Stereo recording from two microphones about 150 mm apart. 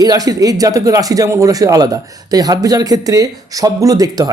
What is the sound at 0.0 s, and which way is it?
Speech, 25° right (ahead or behind).